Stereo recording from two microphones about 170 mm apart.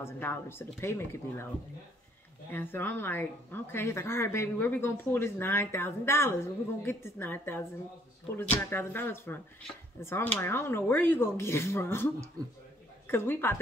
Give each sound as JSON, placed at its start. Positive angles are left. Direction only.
{"t": 0.0, "sound": "speech", "side_deg": 15}
{"t": 2.5, "sound": "speech", "side_deg": 10}
{"t": 12.4, "sound": "speech", "side_deg": -20}
{"t": 13.0, "sound": "a woman's voice", "side_deg": 15}